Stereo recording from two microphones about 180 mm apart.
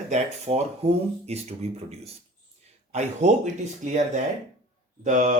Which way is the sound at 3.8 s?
40° right (ahead or behind).